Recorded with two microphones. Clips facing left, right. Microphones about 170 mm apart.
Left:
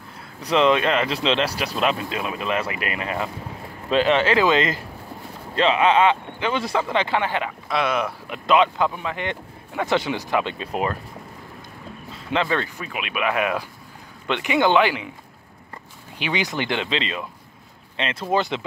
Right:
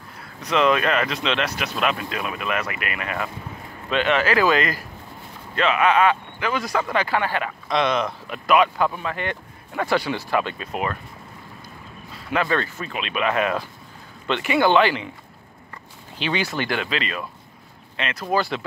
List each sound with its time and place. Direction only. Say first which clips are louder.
0.4 s speech: left 1 dB; 30° left (ahead or behind)
7.6 s speech: right 2 dB; 5° left (ahead or behind)
8.3 s speech: even; 20° left (ahead or behind)
10.6 s speech: left 2 dB; 30° left (ahead or behind)
12.3 s speech: even; 20° left (ahead or behind)
16.2 s speech: even; 15° left (ahead or behind)